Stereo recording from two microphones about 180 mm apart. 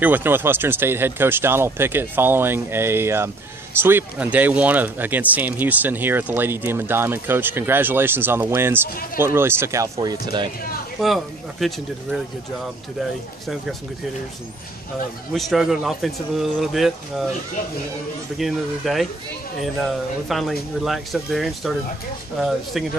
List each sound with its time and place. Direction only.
0.0 s speech: 10° right (ahead or behind)
11.0 s speech: centre (ahead or behind)
15.3 s speech: centre (ahead or behind)
18.4 s speech: centre (ahead or behind)